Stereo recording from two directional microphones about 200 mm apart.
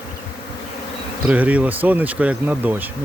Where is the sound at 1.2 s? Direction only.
5° right (ahead or behind).